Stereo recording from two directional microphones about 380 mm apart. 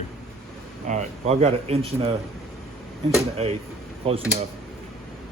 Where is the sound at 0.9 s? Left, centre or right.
Centre.